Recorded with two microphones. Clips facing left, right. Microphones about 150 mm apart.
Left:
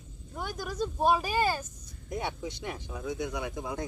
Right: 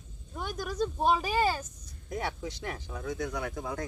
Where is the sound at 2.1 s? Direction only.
15° left (ahead or behind).